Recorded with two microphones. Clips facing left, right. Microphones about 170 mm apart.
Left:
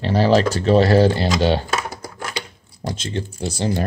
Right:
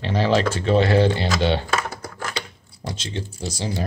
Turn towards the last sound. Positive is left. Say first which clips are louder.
# left 5 dB
turn(degrees=60)  # may be behind; listen again after turning